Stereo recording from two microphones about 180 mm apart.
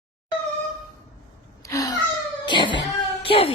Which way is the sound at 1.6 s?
20° left (ahead or behind).